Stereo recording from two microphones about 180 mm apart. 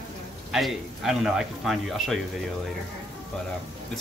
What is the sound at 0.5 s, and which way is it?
Speech, centre (ahead or behind).